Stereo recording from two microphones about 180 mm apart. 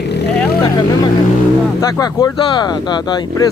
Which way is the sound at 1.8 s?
20° left (ahead or behind).